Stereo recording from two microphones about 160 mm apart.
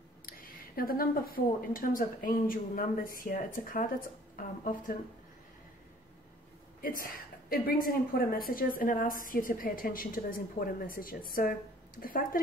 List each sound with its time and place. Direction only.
0.3 s a woman's voice: 65° left (ahead or behind)
6.8 s a woman's voice: 60° left (ahead or behind)